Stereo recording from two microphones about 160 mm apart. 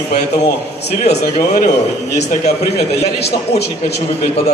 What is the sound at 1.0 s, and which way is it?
Speech, 45° left (ahead or behind).